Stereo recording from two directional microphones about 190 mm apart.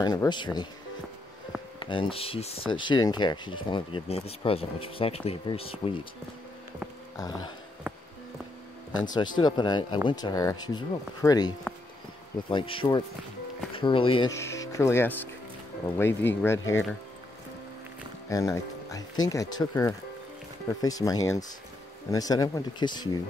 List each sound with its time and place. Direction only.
0.0 s speech: 20° left (ahead or behind)
1.8 s speech: 25° left (ahead or behind)
7.2 s speech: 20° left (ahead or behind)
9.1 s speech: 20° left (ahead or behind)
14.3 s speech: 15° left (ahead or behind)
18.3 s speech: 15° left (ahead or behind)